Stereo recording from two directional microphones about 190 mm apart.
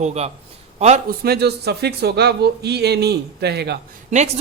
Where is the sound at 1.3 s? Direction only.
60° right (ahead or behind).